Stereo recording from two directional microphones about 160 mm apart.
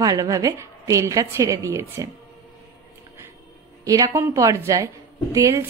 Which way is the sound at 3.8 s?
20° right (ahead or behind).